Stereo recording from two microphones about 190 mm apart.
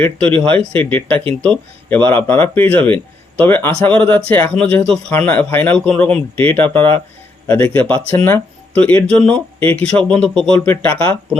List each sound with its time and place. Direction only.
0.0 s speech: 5° left (ahead or behind)
0.3 s speech: 30° right (ahead or behind)
0.8 s speech: 10° left (ahead or behind)